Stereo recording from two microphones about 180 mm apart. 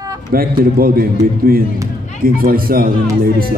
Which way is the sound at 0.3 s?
55° right (ahead or behind).